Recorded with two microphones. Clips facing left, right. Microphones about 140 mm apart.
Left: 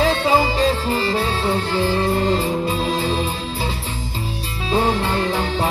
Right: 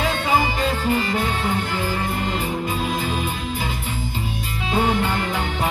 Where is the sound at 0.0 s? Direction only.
35° left (ahead or behind).